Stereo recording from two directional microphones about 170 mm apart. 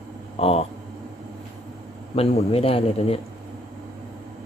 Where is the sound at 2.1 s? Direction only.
35° left (ahead or behind).